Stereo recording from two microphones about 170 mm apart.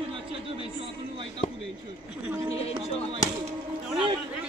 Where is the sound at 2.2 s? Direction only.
10° right (ahead or behind).